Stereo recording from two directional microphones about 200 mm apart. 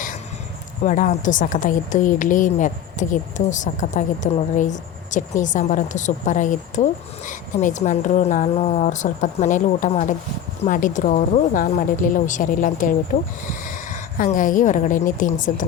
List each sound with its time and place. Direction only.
0.9 s a woman's voice: 40° left (ahead or behind)